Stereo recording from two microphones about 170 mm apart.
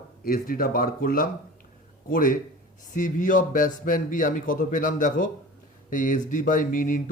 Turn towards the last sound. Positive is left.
turn(degrees=50)  # may be behind; listen again after turning